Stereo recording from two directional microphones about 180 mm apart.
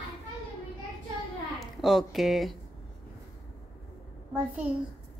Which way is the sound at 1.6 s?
Centre (ahead or behind).